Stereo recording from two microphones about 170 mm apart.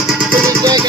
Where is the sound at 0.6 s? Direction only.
20° right (ahead or behind).